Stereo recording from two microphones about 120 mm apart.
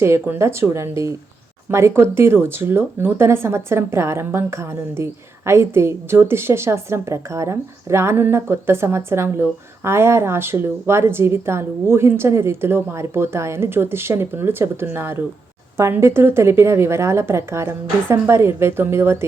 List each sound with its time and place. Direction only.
0.0 s a woman's voice: 25° right (ahead or behind)